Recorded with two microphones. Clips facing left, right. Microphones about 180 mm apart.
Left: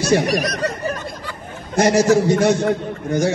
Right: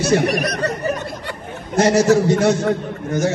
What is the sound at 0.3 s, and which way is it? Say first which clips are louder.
Speech: even; 60° right (ahead or behind).